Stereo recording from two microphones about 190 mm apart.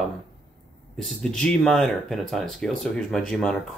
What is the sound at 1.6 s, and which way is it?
Speech, centre (ahead or behind).